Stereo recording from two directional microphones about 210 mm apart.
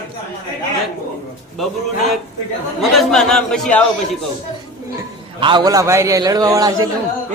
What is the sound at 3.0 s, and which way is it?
Speech, 5° left (ahead or behind).